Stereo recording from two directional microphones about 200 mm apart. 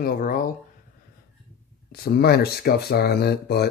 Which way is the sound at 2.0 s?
50° left (ahead or behind).